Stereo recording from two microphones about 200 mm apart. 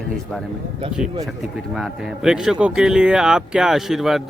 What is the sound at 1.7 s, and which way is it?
Speech, centre (ahead or behind).